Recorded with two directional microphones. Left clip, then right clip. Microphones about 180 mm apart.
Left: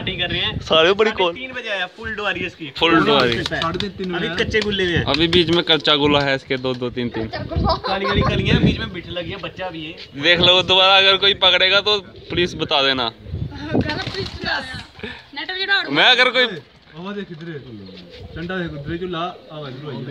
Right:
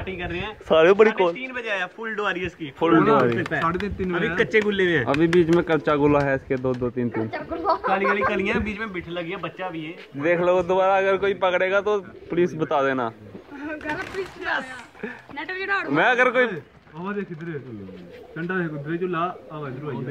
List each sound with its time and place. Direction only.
0.0 s a man's voice: 10° left (ahead or behind)
1.3 s speech: 50° left (ahead or behind)
5.1 s a man's voice: 15° left (ahead or behind)
7.1 s speech: 45° left (ahead or behind)
10.1 s a man's voice: 20° left (ahead or behind)
13.6 s a sound: 45° left (ahead or behind)
16.1 s a man's voice: 5° left (ahead or behind)
17.0 s speech: 55° left (ahead or behind)